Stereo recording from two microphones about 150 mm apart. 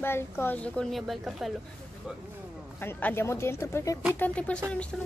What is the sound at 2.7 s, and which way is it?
A woman's voice, 15° left (ahead or behind).